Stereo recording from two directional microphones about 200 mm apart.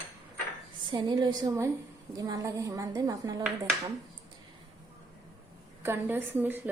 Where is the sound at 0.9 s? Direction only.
25° right (ahead or behind).